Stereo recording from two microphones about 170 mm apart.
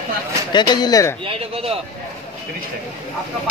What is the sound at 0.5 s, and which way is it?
Speech, 25° left (ahead or behind).